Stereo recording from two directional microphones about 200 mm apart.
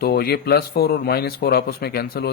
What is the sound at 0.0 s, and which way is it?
A man's voice, 50° left (ahead or behind).